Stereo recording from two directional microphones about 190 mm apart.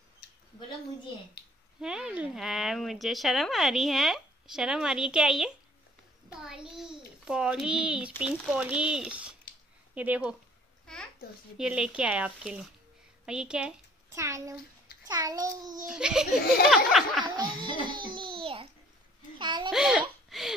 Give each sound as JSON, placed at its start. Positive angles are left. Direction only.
{"t": 1.8, "sound": "a child's voice", "side_deg": -5}
{"t": 11.5, "sound": "speech", "side_deg": -5}
{"t": 14.1, "sound": "a child's voice", "side_deg": -15}
{"t": 15.9, "sound": "speech", "side_deg": -5}
{"t": 17.2, "sound": "music", "side_deg": -25}
{"t": 17.8, "sound": "babbling", "side_deg": -25}
{"t": 19.3, "sound": "a child's voice", "side_deg": -25}
{"t": 19.7, "sound": "a sound", "side_deg": 0}